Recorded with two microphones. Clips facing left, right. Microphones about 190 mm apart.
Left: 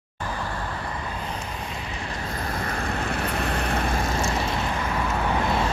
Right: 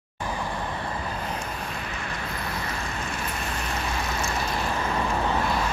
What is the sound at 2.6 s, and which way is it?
Vehicle, 55° left (ahead or behind).